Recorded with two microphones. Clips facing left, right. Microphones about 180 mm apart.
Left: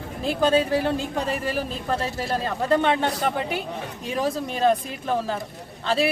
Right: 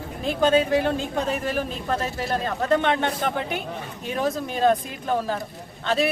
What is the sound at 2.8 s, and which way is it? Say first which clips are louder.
Speech: left 1 dB; 5° left (ahead or behind).